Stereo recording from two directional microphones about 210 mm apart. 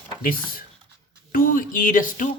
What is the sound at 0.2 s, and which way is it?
Speech, 40° left (ahead or behind).